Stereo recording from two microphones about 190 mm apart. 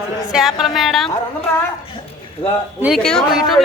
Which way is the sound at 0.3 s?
Centre (ahead or behind).